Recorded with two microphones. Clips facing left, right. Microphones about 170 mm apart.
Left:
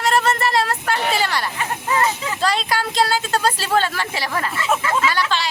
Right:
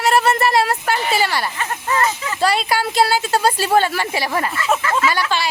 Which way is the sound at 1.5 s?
15° left (ahead or behind).